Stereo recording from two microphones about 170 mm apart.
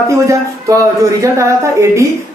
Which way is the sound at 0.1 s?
20° right (ahead or behind).